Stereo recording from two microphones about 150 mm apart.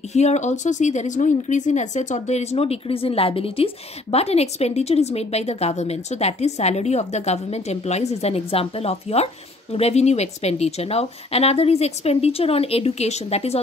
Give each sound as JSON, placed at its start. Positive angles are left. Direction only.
{"t": 0.1, "sound": "speech", "side_deg": 50}